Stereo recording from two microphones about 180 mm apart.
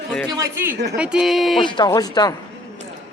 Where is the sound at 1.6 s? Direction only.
25° left (ahead or behind).